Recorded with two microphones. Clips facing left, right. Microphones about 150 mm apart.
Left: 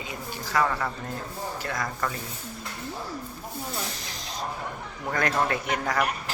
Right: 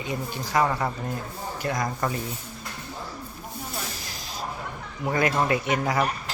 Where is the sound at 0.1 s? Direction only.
25° right (ahead or behind).